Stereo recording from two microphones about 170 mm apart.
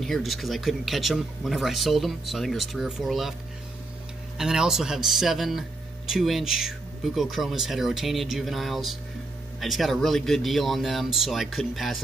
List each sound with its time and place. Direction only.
0.0 s speech: centre (ahead or behind)
4.4 s speech: 5° right (ahead or behind)